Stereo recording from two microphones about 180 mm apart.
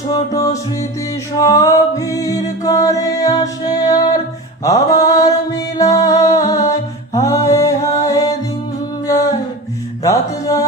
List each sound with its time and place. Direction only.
0.1 s music: 20° left (ahead or behind)
4.9 s mantra: 20° left (ahead or behind)
5.7 s music: 20° left (ahead or behind)
9.0 s a sound: 20° left (ahead or behind)
10.0 s music: 20° left (ahead or behind)